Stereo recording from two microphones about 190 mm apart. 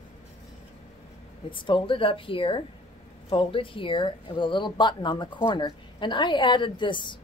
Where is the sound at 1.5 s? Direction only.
25° left (ahead or behind).